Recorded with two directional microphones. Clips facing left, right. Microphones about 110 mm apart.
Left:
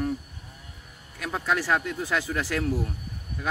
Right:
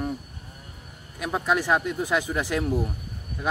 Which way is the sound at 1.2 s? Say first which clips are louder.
Right 3 dB; 20° right (ahead or behind).